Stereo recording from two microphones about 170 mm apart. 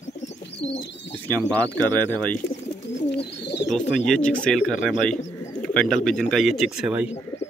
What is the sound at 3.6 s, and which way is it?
Speech, 5° left (ahead or behind).